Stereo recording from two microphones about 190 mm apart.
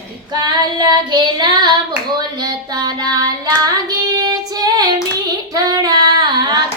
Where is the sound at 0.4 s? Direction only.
20° right (ahead or behind).